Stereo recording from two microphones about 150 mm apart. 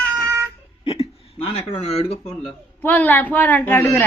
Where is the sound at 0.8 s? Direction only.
40° left (ahead or behind).